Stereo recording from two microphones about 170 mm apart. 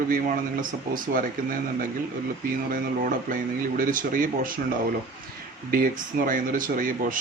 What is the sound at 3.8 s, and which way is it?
Speech, 55° right (ahead or behind).